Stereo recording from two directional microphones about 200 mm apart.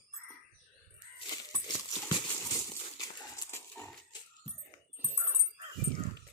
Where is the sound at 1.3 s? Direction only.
20° left (ahead or behind).